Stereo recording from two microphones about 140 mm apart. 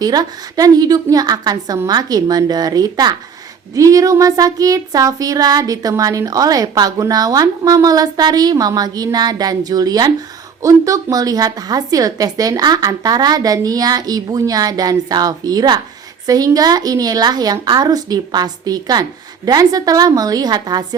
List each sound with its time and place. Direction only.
0.0 s speech: 30° right (ahead or behind)